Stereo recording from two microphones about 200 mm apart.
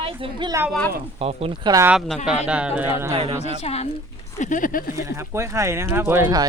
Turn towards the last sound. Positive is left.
turn(degrees=-15)  # may be behind; listen again after turning